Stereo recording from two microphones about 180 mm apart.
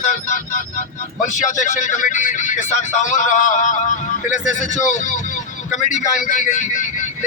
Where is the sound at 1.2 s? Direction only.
45° left (ahead or behind).